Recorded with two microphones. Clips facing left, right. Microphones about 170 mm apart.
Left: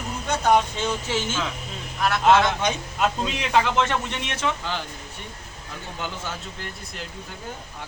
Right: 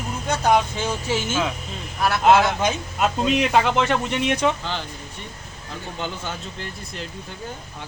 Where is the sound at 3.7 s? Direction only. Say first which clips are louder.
Right 3 dB; 15° right (ahead or behind).